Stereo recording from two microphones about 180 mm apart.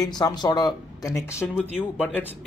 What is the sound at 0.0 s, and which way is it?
Speech, 20° left (ahead or behind).